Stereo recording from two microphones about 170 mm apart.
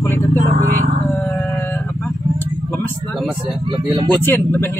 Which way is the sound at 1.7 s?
5° left (ahead or behind).